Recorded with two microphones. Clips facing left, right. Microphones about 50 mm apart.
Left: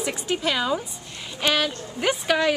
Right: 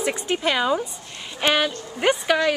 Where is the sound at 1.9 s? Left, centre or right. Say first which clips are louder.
Right 3 dB; centre.